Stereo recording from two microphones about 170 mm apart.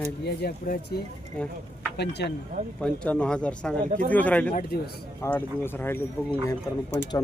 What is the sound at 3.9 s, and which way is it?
Speech, 50° right (ahead or behind).